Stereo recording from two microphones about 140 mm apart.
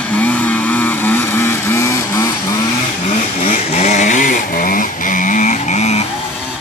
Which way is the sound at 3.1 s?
55° left (ahead or behind).